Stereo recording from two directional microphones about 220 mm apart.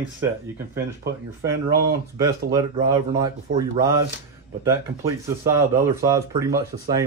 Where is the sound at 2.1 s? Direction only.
15° right (ahead or behind).